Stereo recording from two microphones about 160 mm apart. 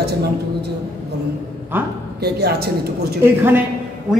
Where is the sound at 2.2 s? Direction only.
80° right.